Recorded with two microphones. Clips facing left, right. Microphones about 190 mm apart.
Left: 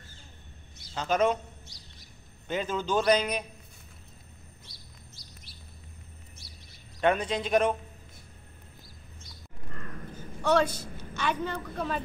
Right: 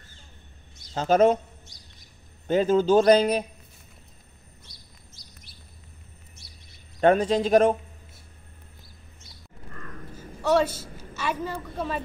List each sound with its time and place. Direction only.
0.9 s a man's voice: 45° right (ahead or behind)
2.4 s a man's voice: 45° right (ahead or behind)
7.0 s speech: 40° right (ahead or behind)
10.4 s a woman's voice: 5° right (ahead or behind)